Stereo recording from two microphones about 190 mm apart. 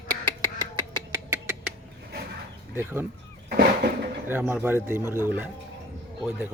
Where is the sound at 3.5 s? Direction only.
60° right (ahead or behind).